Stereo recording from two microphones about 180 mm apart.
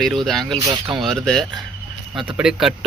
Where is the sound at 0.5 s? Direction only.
25° right (ahead or behind).